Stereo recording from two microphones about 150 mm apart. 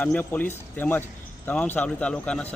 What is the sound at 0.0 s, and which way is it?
Speech, 10° left (ahead or behind).